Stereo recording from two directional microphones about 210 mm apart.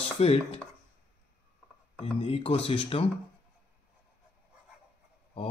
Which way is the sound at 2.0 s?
25° left (ahead or behind).